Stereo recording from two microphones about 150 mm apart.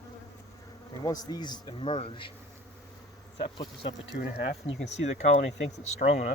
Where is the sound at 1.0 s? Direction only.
25° left (ahead or behind).